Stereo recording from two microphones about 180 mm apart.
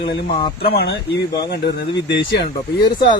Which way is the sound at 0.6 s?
60° left (ahead or behind).